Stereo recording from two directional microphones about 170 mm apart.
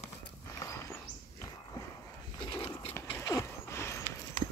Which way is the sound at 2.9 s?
15° left (ahead or behind).